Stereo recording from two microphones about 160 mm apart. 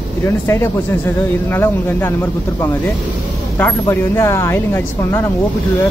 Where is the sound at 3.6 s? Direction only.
15° left (ahead or behind).